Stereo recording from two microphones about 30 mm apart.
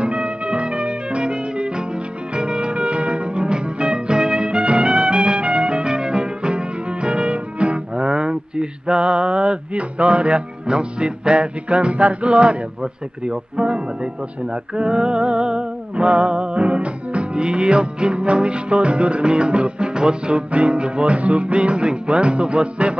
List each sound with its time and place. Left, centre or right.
0.0 s music: right
12.4 s music: right
20.5 s music: right